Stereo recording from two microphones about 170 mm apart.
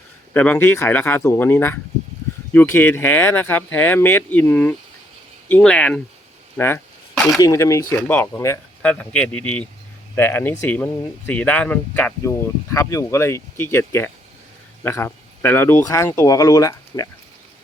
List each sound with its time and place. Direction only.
0.3 s speech: 10° left (ahead or behind)
6.6 s a sound: 15° left (ahead or behind)
7.3 s speech: 20° left (ahead or behind)